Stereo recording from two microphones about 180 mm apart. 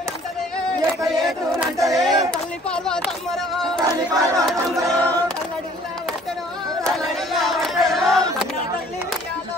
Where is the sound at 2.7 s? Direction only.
5° left (ahead or behind).